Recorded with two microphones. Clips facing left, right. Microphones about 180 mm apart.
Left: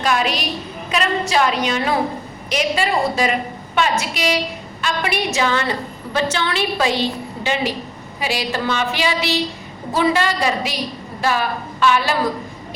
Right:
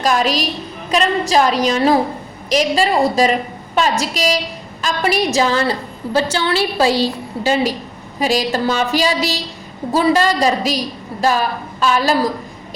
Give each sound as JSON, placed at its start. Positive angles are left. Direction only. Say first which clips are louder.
{"t": 0.0, "sound": "a woman's voice", "louder": "right 3 dB", "side_deg": -40}